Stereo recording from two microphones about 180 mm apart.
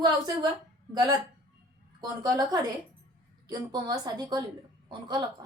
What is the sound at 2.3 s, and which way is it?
A woman's voice, 20° right (ahead or behind).